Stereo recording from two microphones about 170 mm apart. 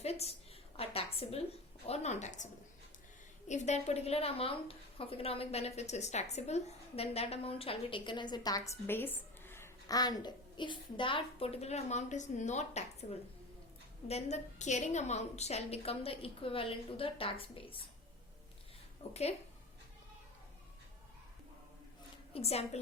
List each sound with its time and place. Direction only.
0.0 s a sound: 35° left (ahead or behind)
1.9 s a woman's voice: 40° left (ahead or behind)
19.0 s a woman's voice: 40° left (ahead or behind)
22.3 s a woman's voice: 35° left (ahead or behind)